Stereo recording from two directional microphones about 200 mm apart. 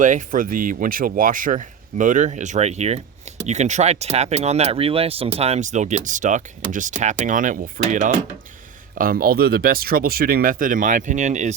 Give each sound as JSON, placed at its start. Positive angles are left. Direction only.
{"t": 0.0, "sound": "speech", "side_deg": -40}